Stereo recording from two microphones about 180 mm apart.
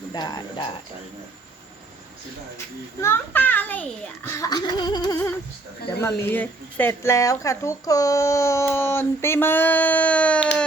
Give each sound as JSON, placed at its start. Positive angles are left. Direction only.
{"t": 0.1, "sound": "cricket", "side_deg": 25}
{"t": 3.0, "sound": "a child's voice", "side_deg": 10}
{"t": 6.2, "sound": "a child's voice", "side_deg": 10}